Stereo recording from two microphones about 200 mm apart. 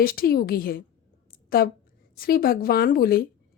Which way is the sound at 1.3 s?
50° left (ahead or behind).